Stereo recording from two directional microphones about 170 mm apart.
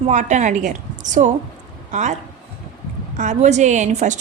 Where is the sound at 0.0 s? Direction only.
45° right (ahead or behind).